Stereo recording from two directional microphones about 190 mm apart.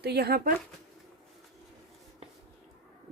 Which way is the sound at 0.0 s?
60° right (ahead or behind).